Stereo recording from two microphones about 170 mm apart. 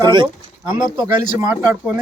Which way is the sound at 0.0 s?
25° right (ahead or behind).